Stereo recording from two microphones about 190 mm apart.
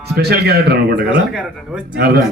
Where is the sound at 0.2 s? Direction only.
60° right (ahead or behind).